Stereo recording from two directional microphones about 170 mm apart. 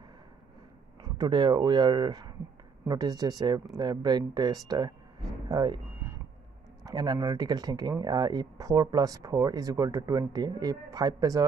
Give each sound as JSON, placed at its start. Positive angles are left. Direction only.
{"t": 1.0, "sound": "speech", "side_deg": -25}
{"t": 5.5, "sound": "a sound", "side_deg": -25}
{"t": 6.8, "sound": "speech", "side_deg": -25}